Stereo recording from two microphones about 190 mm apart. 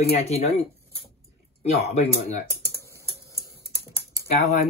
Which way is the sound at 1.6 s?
35° left (ahead or behind).